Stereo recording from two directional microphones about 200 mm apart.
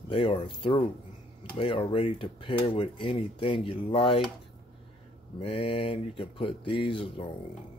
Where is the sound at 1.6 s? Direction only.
25° left (ahead or behind).